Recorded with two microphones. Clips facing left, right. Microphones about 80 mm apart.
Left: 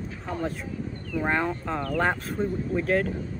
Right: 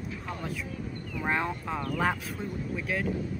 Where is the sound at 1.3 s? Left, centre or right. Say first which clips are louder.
Left 2 dB; centre.